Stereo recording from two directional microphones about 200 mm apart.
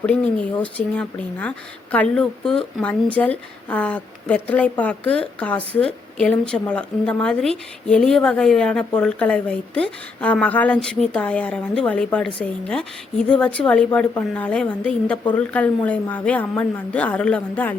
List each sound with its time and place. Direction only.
0.6 s a woman's voice: 5° left (ahead or behind)